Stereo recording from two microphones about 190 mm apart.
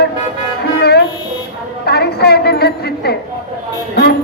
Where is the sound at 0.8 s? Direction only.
60° left (ahead or behind).